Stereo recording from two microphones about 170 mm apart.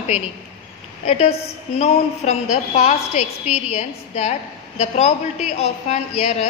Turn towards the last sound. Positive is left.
turn(degrees=40)  # may be behind; listen again after turning